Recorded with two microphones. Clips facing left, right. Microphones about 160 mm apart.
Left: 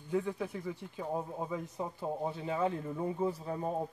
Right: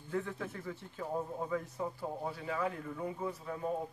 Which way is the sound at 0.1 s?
15° left (ahead or behind).